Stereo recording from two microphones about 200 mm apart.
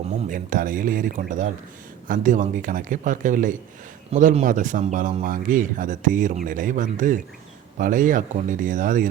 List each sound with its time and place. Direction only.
0.3 s speech: 45° right (ahead or behind)